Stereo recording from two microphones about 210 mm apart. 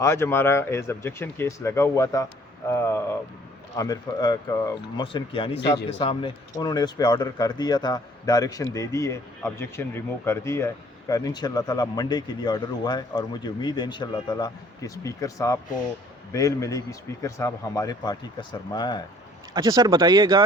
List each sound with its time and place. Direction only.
0.0 s speech: 10° left (ahead or behind)
19.5 s speech: 20° right (ahead or behind)